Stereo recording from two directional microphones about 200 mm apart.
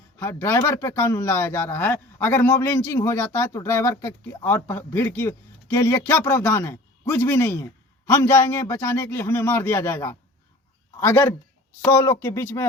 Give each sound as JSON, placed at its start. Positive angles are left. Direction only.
{"t": 0.2, "sound": "speech", "side_deg": 10}